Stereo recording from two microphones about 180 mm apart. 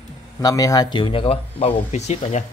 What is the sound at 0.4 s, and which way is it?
Speech, 20° left (ahead or behind).